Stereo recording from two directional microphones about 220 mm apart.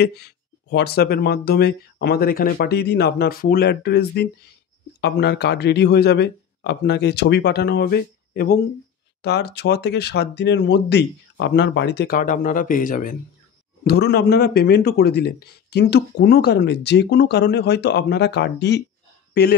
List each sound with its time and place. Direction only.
0.0 s speech: 45° left (ahead or behind)